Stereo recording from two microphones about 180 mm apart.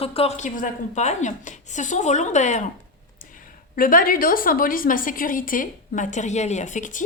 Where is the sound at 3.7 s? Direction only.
50° left (ahead or behind).